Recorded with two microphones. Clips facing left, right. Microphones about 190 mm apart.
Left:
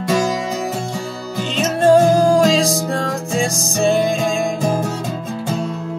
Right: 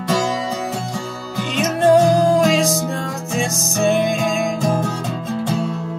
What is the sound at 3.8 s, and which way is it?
Music, 30° left (ahead or behind).